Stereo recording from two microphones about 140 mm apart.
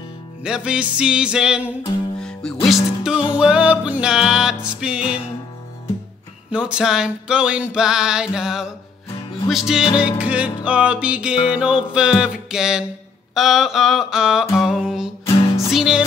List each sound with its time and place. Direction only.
0.4 s music: 5° right (ahead or behind)
2.1 s music: 5° left (ahead or behind)
6.5 s music: 5° right (ahead or behind)
15.2 s music: 45° left (ahead or behind)
15.7 s music: 5° right (ahead or behind)